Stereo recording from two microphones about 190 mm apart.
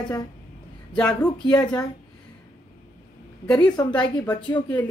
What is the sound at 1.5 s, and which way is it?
Speech, 20° left (ahead or behind).